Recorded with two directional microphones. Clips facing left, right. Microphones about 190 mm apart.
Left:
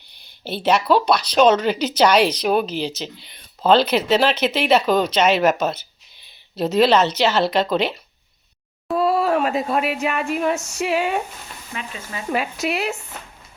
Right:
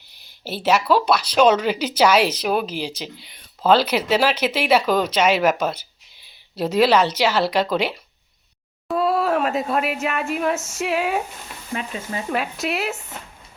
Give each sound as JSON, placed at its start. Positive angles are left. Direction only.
{"t": 0.4, "sound": "speech", "side_deg": -5}
{"t": 11.7, "sound": "speech", "side_deg": -35}
{"t": 12.3, "sound": "speech", "side_deg": 0}